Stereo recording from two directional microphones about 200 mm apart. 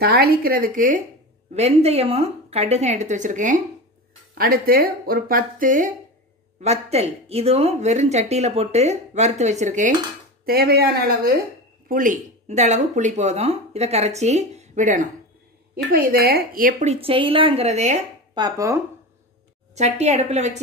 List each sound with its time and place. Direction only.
0.0 s speech: 50° right (ahead or behind)
1.5 s speech: 30° right (ahead or behind)
10.4 s speech: 50° right (ahead or behind); by 18.0 s 35° right (ahead or behind)
18.3 s speech: 15° right (ahead or behind)
19.7 s speech: 35° right (ahead or behind)